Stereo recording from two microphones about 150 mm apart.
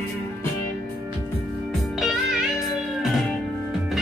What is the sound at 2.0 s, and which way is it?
Music, centre (ahead or behind).